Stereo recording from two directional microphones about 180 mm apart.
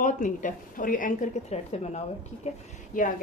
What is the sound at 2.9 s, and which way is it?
Speech, 50° left (ahead or behind).